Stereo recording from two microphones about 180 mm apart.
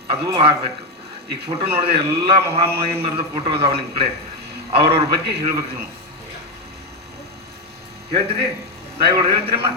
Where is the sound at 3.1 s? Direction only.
35° right (ahead or behind).